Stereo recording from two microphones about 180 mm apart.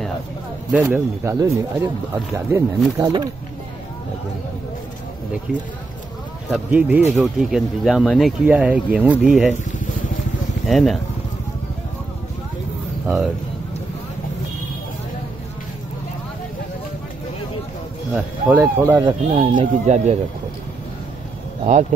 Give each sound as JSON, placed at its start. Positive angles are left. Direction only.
{"t": 0.7, "sound": "speech", "side_deg": -10}
{"t": 6.5, "sound": "speech", "side_deg": -10}
{"t": 10.7, "sound": "speech", "side_deg": 0}
{"t": 13.0, "sound": "speech", "side_deg": -5}
{"t": 18.1, "sound": "speech", "side_deg": -10}